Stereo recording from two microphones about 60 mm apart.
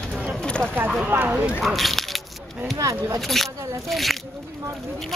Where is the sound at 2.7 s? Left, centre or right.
Right.